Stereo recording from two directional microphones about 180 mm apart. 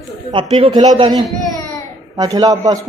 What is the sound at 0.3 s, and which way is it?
A man's voice, 30° right (ahead or behind).